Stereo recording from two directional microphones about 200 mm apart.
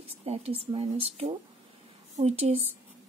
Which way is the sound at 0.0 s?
30° right (ahead or behind).